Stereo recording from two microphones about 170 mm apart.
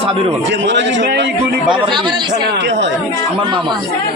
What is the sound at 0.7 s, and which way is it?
Speech, 90° right.